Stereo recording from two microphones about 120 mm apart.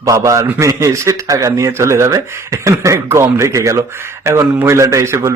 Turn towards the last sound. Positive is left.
turn(degrees=-20)  # may be behind; listen again after turning